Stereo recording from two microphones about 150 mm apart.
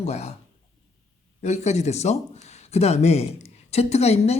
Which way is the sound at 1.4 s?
50° left (ahead or behind).